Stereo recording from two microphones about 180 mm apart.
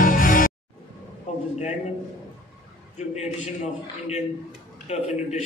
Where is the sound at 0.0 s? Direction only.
50° left (ahead or behind).